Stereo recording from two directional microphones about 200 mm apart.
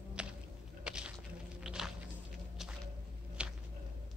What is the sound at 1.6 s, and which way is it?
Walk, 5° right (ahead or behind).